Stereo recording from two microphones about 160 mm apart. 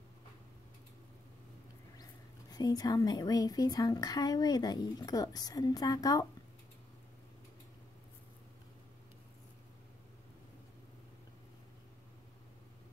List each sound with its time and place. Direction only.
2.5 s a woman's voice: 25° left (ahead or behind)